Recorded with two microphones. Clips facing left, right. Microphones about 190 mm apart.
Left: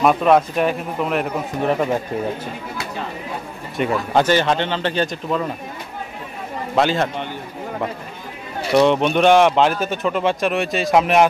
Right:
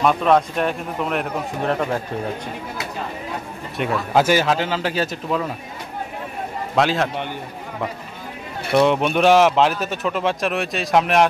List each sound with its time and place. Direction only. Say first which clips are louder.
0.0 s a man's voice: left 2 dB; 5° left (ahead or behind)
3.7 s a man's voice: left 1 dB; centre (ahead or behind)
6.7 s a man's voice: left 1 dB; centre (ahead or behind)
8.7 s a man's voice: left 2 dB; centre (ahead or behind)